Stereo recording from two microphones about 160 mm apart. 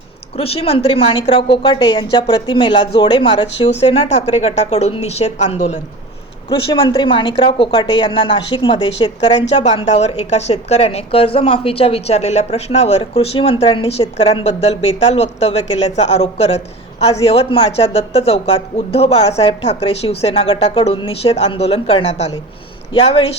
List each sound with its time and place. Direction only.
0.3 s speech: 35° left (ahead or behind)
6.5 s a woman's voice: 35° left (ahead or behind)